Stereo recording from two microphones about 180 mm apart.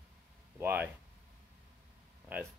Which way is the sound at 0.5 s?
10° right (ahead or behind).